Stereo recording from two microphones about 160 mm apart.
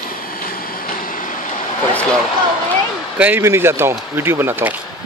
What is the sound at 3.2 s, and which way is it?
Speech, 10° right (ahead or behind).